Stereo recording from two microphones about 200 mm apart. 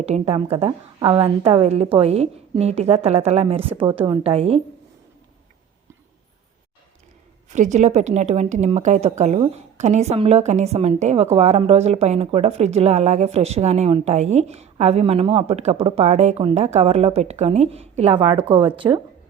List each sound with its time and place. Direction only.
0.0 s a woman's voice: 30° right (ahead or behind)
7.5 s a woman's voice: 35° right (ahead or behind)